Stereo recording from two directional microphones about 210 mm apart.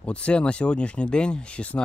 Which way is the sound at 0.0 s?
5° left (ahead or behind).